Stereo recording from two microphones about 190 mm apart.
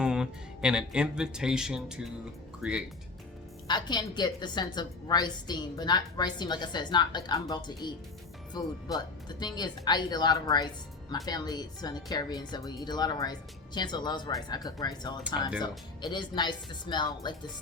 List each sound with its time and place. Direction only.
0.0 s speech: 5° right (ahead or behind)
3.7 s a woman's voice: 20° left (ahead or behind)
9.6 s a woman's voice: 20° left (ahead or behind)